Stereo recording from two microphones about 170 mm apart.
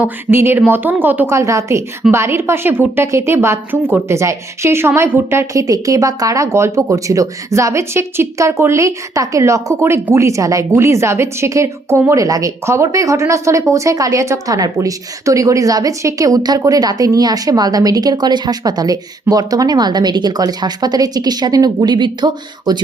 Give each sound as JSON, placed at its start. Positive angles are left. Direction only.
{"t": 0.0, "sound": "a woman's voice", "side_deg": -15}